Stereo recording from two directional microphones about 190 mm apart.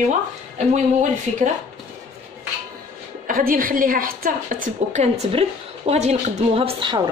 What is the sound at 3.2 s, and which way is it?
A woman's voice, 50° right (ahead or behind).